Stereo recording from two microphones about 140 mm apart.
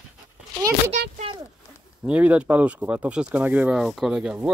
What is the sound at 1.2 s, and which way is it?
Speech, 40° right (ahead or behind).